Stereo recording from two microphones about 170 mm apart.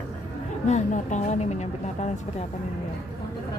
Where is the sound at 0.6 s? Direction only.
45° left (ahead or behind).